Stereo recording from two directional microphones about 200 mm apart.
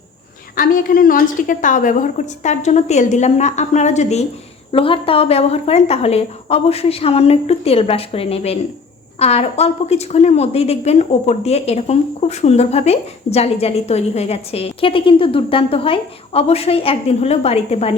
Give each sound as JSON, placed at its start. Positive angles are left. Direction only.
{"t": 0.5, "sound": "a woman's voice", "side_deg": 45}